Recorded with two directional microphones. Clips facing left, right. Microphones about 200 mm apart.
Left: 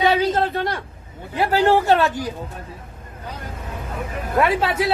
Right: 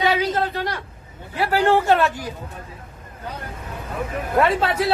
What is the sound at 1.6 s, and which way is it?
Speech, 15° left (ahead or behind).